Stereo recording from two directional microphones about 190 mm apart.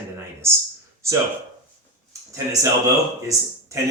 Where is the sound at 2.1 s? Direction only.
15° right (ahead or behind).